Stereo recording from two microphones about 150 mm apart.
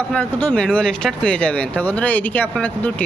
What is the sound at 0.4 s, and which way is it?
Speech, 10° left (ahead or behind).